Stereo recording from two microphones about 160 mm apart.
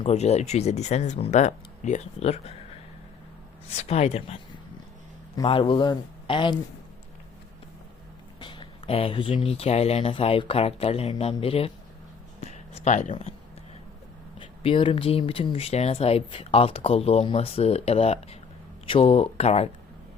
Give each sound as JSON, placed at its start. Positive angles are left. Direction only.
{"t": 0.0, "sound": "speech", "side_deg": 45}
{"t": 3.7, "sound": "speech", "side_deg": 40}
{"t": 5.4, "sound": "speech", "side_deg": 30}
{"t": 8.4, "sound": "speech", "side_deg": 30}
{"t": 12.5, "sound": "a sound", "side_deg": 45}
{"t": 14.3, "sound": "speech", "side_deg": 35}